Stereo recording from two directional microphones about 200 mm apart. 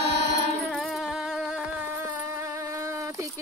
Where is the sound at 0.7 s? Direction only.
Centre (ahead or behind).